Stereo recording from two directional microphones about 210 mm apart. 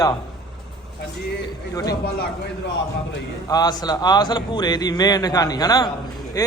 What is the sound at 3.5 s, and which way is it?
A man's voice, 20° left (ahead or behind).